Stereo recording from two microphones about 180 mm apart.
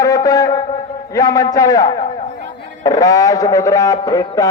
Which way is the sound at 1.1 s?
20° left (ahead or behind).